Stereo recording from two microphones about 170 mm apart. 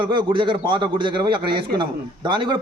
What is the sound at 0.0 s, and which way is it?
A man's voice, 30° right (ahead or behind).